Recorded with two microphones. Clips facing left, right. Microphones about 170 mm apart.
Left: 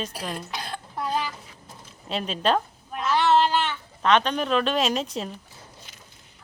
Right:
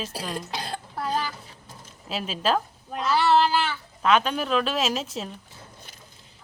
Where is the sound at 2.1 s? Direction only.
5° right (ahead or behind).